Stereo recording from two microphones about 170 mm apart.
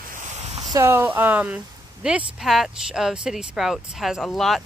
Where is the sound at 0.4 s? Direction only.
40° right (ahead or behind).